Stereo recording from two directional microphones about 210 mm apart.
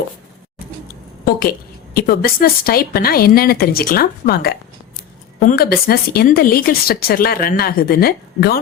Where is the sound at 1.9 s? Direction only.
45° left (ahead or behind).